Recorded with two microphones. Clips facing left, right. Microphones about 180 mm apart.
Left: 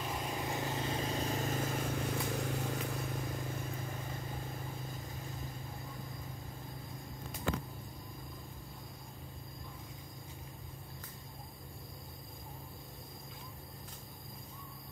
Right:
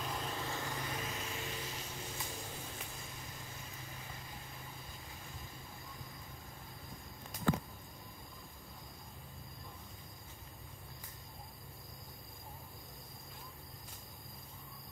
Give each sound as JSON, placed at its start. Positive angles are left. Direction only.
{"t": 0.0, "sound": "vehicle", "side_deg": 10}